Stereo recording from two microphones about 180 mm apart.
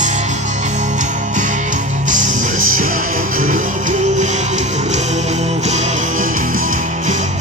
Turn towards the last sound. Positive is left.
turn(degrees=-45)  # may be behind; listen again after turning